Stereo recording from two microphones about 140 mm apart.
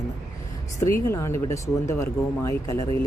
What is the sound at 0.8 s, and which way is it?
Speech, 20° left (ahead or behind).